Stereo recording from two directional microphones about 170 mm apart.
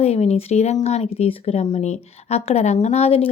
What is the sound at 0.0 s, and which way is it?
Speech, 40° left (ahead or behind).